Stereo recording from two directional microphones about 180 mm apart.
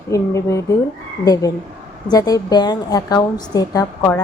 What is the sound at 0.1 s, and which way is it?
A woman's voice, 15° left (ahead or behind).